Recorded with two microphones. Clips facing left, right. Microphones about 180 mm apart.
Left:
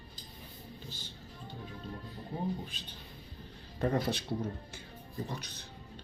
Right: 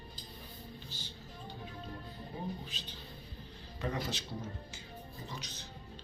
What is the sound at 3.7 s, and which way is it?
Speech, 55° left (ahead or behind).